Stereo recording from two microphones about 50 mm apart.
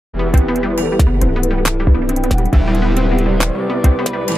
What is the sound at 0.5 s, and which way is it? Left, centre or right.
Music, centre.